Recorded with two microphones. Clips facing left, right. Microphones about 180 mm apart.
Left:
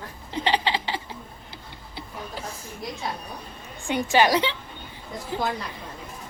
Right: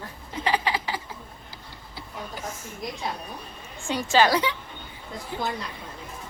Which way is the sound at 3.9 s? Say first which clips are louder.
Left 1 dB; 15° left (ahead or behind).